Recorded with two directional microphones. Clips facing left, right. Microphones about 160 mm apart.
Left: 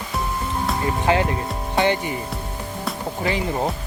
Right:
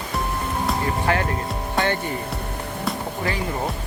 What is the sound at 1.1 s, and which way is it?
Speech, 20° left (ahead or behind).